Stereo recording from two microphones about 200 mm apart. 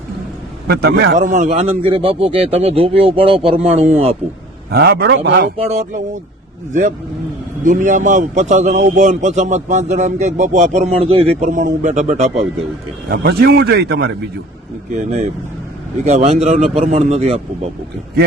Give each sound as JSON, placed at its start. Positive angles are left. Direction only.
{"t": 0.7, "sound": "a man's voice", "side_deg": -50}
{"t": 1.3, "sound": "a man's voice", "side_deg": -35}
{"t": 4.7, "sound": "a man's voice", "side_deg": -50}
{"t": 5.5, "sound": "a man's voice", "side_deg": -35}
{"t": 7.6, "sound": "a man's voice", "side_deg": -40}
{"t": 13.1, "sound": "a man's voice", "side_deg": -50}
{"t": 14.9, "sound": "a man's voice", "side_deg": -35}